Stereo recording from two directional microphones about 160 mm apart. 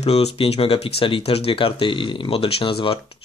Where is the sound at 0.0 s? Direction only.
40° left (ahead or behind).